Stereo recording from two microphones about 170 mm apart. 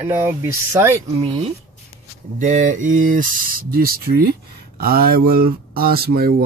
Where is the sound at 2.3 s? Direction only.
45° right (ahead or behind).